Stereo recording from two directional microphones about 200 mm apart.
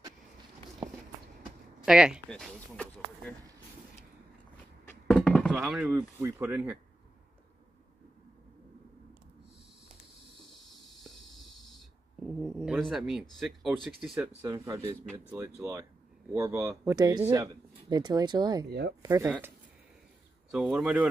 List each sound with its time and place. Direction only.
1.9 s speech: 5° right (ahead or behind)
4.8 s a sound: 5° left (ahead or behind)
10.7 s snoring: centre (ahead or behind)
14.1 s speech: 10° right (ahead or behind)
18.7 s speech: 55° right (ahead or behind)
19.0 s speech: 15° right (ahead or behind)
20.5 s speech: 5° right (ahead or behind)